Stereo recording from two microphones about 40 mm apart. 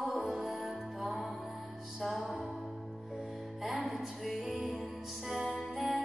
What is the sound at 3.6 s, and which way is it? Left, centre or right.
Music, centre.